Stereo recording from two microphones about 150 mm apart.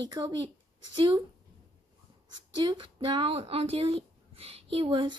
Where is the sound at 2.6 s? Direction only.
35° right (ahead or behind).